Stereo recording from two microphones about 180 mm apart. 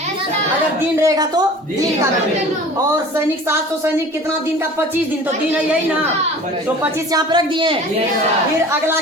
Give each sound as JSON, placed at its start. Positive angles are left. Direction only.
{"t": 1.0, "sound": "a woman's voice", "side_deg": -20}
{"t": 7.1, "sound": "a woman's voice", "side_deg": -25}